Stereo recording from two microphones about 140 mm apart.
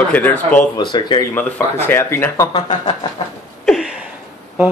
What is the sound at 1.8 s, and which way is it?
Speech, 15° left (ahead or behind).